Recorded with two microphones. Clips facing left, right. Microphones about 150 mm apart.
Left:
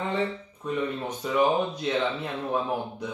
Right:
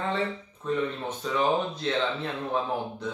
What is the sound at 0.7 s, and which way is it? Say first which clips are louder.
Speech: even; 10° left (ahead or behind).